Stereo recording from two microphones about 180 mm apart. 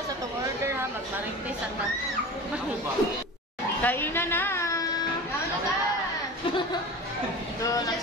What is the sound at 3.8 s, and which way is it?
A woman's voice, 10° left (ahead or behind).